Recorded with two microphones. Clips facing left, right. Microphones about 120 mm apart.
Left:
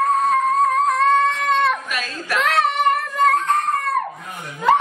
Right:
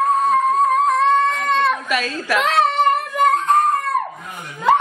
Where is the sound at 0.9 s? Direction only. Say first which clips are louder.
Right 1 dB; centre (ahead or behind).